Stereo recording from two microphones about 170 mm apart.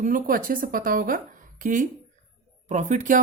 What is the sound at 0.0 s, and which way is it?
A woman's voice, 55° right (ahead or behind).